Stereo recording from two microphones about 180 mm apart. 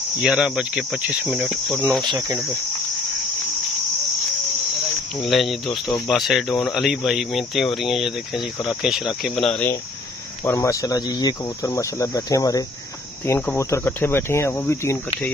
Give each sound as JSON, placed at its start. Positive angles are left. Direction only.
{"t": 0.2, "sound": "speech", "side_deg": -5}
{"t": 2.0, "sound": "speech", "side_deg": -15}
{"t": 5.2, "sound": "speech", "side_deg": 0}